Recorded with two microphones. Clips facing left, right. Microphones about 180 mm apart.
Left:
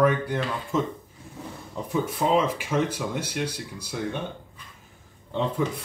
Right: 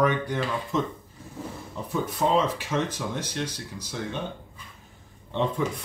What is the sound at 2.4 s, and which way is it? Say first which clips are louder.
Speech: left 1 dB; 10° left (ahead or behind).